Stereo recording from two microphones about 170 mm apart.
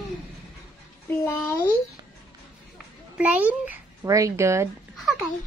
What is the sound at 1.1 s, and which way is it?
Speech, 15° left (ahead or behind).